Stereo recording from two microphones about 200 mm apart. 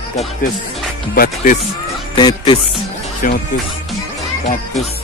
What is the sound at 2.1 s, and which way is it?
Music, 20° left (ahead or behind).